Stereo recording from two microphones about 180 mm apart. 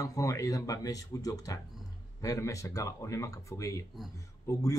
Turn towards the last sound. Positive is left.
turn(degrees=20)  # may be behind; listen again after turning